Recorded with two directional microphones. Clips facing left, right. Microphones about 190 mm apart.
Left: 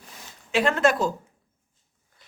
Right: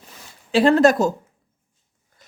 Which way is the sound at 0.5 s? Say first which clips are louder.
Right 7 dB; 35° right (ahead or behind).